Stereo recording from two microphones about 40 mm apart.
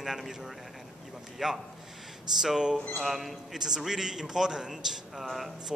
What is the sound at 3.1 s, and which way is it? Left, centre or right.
A man's voice, centre.